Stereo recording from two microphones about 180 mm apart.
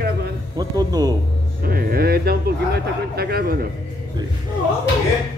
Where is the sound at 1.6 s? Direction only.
55° right (ahead or behind).